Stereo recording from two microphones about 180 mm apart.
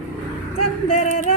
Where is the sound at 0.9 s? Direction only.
40° left (ahead or behind).